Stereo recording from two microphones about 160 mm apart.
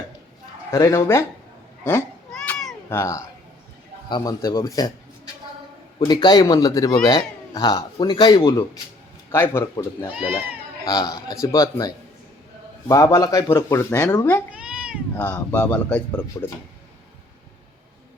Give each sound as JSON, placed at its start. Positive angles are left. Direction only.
{"t": 0.7, "sound": "speech", "side_deg": 20}
{"t": 1.9, "sound": "cat", "side_deg": 10}
{"t": 4.1, "sound": "a man's voice", "side_deg": 20}
{"t": 10.2, "sound": "speech", "side_deg": -15}
{"t": 10.8, "sound": "speech", "side_deg": 25}
{"t": 14.5, "sound": "cat", "side_deg": -5}
{"t": 15.1, "sound": "speech", "side_deg": 15}